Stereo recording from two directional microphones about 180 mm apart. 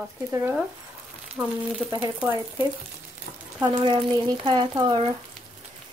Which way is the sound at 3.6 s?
25° right (ahead or behind).